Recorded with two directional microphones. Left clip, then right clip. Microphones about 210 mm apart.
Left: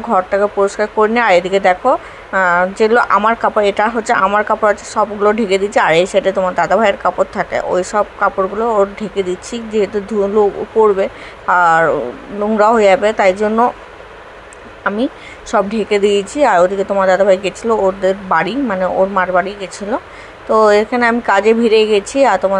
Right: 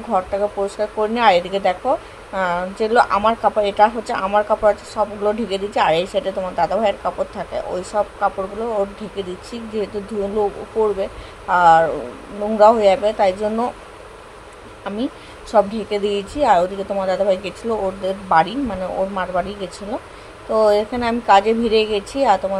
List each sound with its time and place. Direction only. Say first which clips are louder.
0.1 s speech: left 6 dB; 20° left (ahead or behind)
11.0 s speech: left 7 dB; 20° left (ahead or behind)
15.5 s speech: left 3 dB; 20° left (ahead or behind)